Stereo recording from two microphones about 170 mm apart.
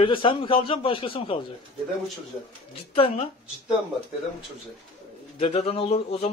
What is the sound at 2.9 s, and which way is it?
Speech, 35° left (ahead or behind).